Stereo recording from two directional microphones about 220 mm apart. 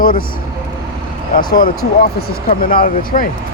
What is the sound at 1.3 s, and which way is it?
Speech, 40° left (ahead or behind).